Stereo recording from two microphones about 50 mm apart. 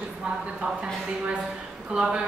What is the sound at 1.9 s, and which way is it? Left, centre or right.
Speech, centre.